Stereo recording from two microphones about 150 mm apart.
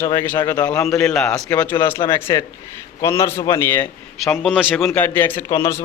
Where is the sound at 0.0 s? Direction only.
15° left (ahead or behind).